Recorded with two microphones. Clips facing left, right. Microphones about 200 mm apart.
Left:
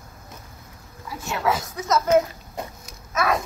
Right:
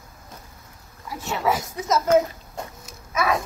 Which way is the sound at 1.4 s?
15° right (ahead or behind).